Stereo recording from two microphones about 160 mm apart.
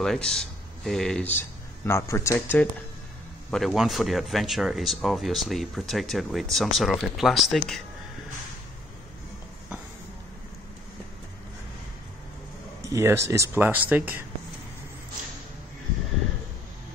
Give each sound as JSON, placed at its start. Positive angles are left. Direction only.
{"t": 0.0, "sound": "speech", "side_deg": 5}
{"t": 3.4, "sound": "speech", "side_deg": 0}
{"t": 12.8, "sound": "speech", "side_deg": -20}